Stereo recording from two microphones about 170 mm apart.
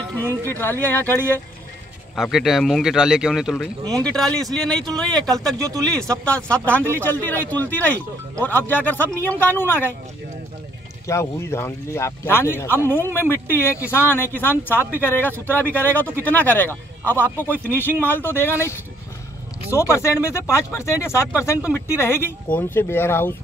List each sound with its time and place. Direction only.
0.2 s speech: 15° right (ahead or behind)
0.5 s speech: 10° left (ahead or behind)
2.1 s speech: centre (ahead or behind)
11.1 s speech: 15° left (ahead or behind)